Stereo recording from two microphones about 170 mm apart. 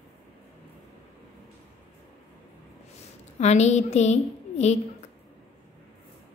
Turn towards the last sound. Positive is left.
turn(degrees=40)  # may be behind; listen again after turning